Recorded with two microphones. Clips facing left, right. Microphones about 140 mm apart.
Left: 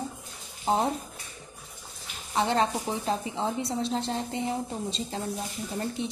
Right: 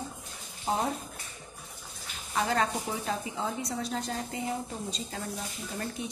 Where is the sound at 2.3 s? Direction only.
25° left (ahead or behind).